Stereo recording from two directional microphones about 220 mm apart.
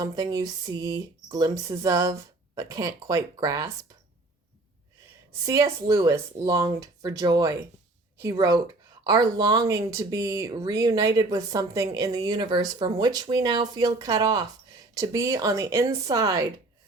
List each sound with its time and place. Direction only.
0.0 s speech: 15° right (ahead or behind)
5.5 s speech: 15° right (ahead or behind)